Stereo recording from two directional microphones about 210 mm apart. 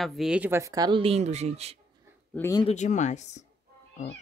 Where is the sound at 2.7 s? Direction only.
35° left (ahead or behind).